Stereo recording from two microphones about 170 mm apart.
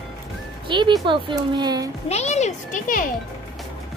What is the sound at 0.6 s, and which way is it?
Speech, 30° right (ahead or behind).